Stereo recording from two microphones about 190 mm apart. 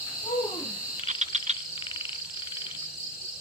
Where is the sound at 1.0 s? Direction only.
35° right (ahead or behind).